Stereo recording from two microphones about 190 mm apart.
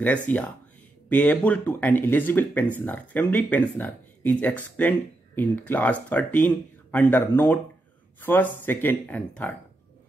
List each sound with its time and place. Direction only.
0.0 s speech: 10° left (ahead or behind)